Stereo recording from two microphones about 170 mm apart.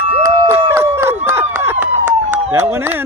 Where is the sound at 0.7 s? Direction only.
15° right (ahead or behind).